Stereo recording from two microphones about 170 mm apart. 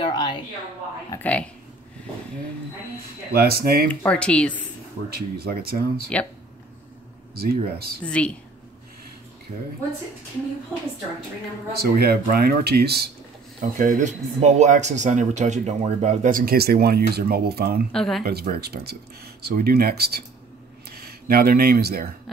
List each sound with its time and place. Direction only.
0.0 s a woman's voice: 25° left (ahead or behind)
1.1 s speech: 10° left (ahead or behind)
3.3 s speech: 65° right (ahead or behind)
3.9 s speech: 10° left (ahead or behind)
5.1 s speech: 65° right (ahead or behind)
7.3 s speech: 65° right (ahead or behind)
8.0 s speech: 5° left (ahead or behind)
11.8 s speech: 65° right (ahead or behind)
13.6 s speech: 50° right (ahead or behind); by 17.8 s 65° right (ahead or behind)
17.9 s speech: centre (ahead or behind)
18.2 s speech: 60° right (ahead or behind)